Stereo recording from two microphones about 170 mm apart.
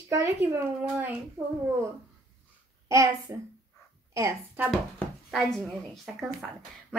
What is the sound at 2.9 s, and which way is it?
A child's voice, 20° right (ahead or behind).